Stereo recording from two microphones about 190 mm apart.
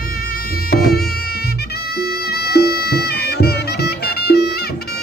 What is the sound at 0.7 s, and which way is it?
Music, 55° left (ahead or behind).